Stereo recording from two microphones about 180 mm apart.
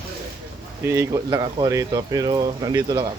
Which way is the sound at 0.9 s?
15° right (ahead or behind).